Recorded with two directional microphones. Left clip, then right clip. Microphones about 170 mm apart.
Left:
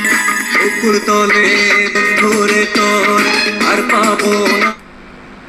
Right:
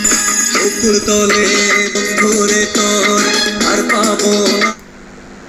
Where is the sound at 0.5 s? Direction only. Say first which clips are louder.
Left 1 dB; 40° right (ahead or behind).